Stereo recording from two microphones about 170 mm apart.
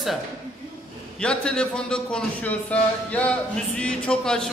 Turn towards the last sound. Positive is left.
turn(degrees=5)  # may be behind; listen again after turning